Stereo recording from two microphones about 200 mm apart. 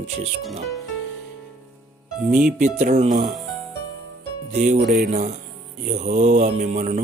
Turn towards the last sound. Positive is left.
turn(degrees=-35)  # may be behind; listen again after turning